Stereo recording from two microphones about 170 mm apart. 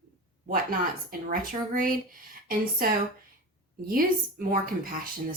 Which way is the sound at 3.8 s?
60° right (ahead or behind).